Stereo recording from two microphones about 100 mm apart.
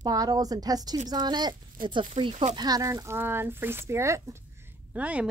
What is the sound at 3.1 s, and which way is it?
Speech, 20° right (ahead or behind).